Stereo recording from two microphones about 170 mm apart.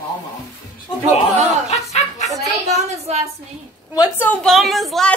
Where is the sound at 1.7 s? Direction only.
40° left (ahead or behind).